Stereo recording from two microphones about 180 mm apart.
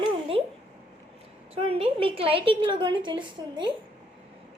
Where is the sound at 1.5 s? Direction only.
30° right (ahead or behind).